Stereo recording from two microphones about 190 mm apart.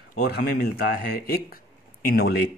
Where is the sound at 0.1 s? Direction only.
60° left (ahead or behind).